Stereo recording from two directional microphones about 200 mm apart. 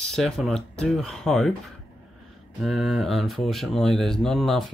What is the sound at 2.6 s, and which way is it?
Speech, centre (ahead or behind).